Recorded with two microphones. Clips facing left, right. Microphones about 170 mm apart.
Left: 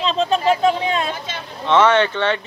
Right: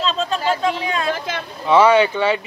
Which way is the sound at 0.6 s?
25° left (ahead or behind).